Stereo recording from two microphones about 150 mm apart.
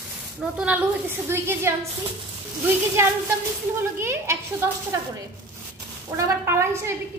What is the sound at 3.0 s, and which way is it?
A woman's voice, 15° right (ahead or behind).